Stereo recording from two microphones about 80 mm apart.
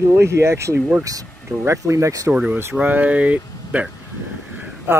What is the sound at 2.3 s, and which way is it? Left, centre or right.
Speech, centre.